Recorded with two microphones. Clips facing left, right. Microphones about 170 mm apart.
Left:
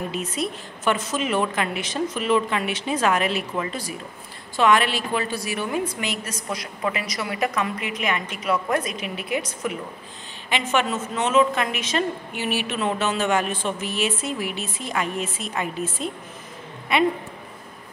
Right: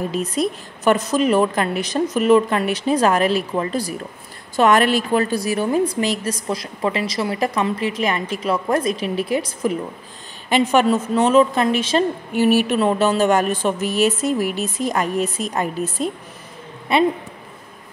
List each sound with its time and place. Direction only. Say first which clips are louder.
0.1 s a woman's voice: right 6 dB; 35° right (ahead or behind)
16.9 s a woman's voice: right 4 dB; 30° right (ahead or behind)